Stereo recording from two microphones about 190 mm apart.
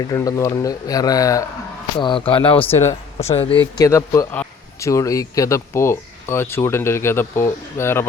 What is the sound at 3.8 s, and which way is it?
A man's voice, 15° left (ahead or behind).